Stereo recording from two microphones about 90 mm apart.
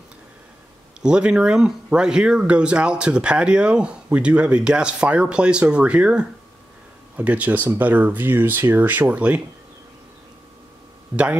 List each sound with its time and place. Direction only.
1.0 s speech: 10° right (ahead or behind)